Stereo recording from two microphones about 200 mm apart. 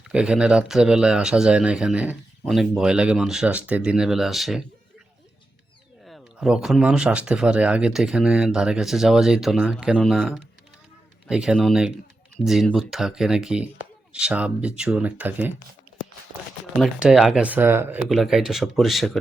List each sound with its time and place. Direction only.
0.0 s speech: 5° right (ahead or behind)
6.1 s speech: centre (ahead or behind)
16.7 s speech: centre (ahead or behind)